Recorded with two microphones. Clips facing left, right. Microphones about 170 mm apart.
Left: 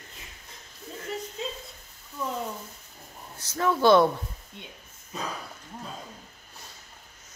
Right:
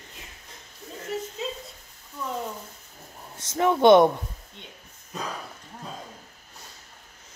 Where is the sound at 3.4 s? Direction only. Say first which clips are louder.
Right 4 dB; 25° right (ahead or behind).